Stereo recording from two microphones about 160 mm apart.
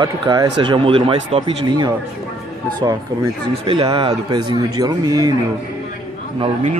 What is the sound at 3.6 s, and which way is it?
Speech, 35° right (ahead or behind).